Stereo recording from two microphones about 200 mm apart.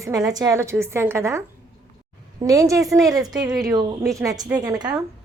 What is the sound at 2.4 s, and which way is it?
Speech, 15° right (ahead or behind).